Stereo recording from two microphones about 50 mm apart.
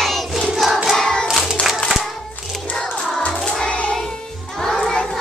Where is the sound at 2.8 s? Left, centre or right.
Centre.